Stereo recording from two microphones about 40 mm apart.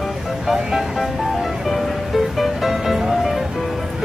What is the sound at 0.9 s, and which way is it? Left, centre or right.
Music, centre.